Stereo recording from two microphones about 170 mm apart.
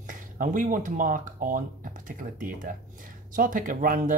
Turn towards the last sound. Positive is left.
turn(degrees=-55)  # may be behind; listen again after turning